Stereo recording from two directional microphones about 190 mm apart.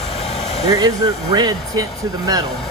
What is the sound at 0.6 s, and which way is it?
Speech, 20° right (ahead or behind).